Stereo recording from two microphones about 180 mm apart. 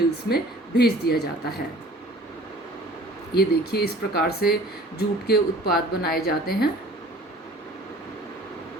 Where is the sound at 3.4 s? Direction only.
60° left (ahead or behind).